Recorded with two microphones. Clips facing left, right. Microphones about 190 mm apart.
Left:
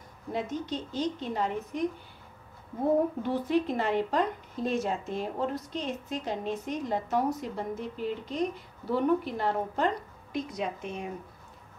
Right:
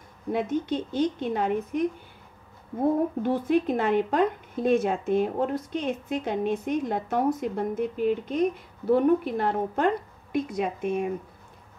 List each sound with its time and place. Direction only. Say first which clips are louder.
0.3 s speech: right 6 dB; 55° right (ahead or behind)
3.2 s speech: right 4 dB; 50° right (ahead or behind)